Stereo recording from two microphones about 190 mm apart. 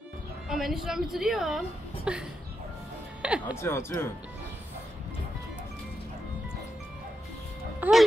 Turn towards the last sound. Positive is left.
turn(degrees=-10)  # may be behind; listen again after turning